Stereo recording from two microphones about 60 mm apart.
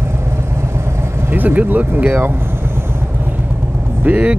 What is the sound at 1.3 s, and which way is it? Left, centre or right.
Speech, right.